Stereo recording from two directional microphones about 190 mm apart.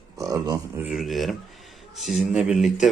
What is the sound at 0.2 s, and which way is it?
Speech, 20° right (ahead or behind).